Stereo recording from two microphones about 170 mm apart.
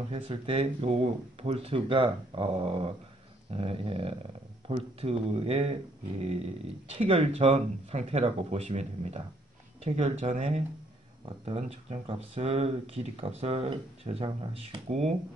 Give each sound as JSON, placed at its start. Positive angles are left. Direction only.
{"t": 0.1, "sound": "speech", "side_deg": -30}